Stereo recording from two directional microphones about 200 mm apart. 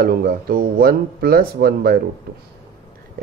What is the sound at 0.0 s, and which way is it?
Speech, 50° right (ahead or behind).